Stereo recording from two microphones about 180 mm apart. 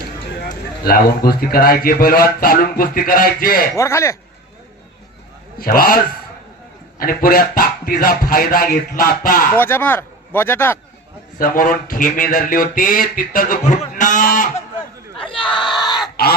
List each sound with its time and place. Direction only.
0.4 s a man's voice: 55° left (ahead or behind)
3.8 s speech: 15° left (ahead or behind)
5.5 s a man's voice: 55° left (ahead or behind)
7.0 s speech: 55° left (ahead or behind)
9.6 s a man's voice: 10° left (ahead or behind)
11.3 s speech: 50° left (ahead or behind)
15.8 s a sound: 20° left (ahead or behind)